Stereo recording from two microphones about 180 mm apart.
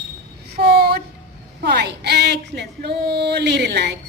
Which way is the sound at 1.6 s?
65° right (ahead or behind).